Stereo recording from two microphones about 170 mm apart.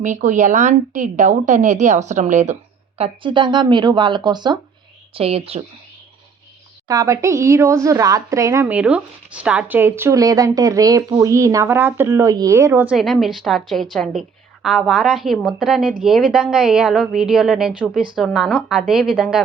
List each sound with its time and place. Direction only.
0.0 s a woman's voice: 45° right (ahead or behind)
3.0 s speech: 30° right (ahead or behind)
6.8 s a woman's voice: 20° right (ahead or behind); by 19.4 s 5° right (ahead or behind)